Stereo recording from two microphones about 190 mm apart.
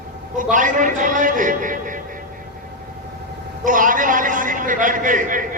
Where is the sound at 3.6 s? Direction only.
45° right (ahead or behind).